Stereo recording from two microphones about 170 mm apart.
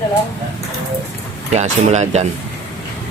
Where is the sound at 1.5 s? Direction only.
40° right (ahead or behind).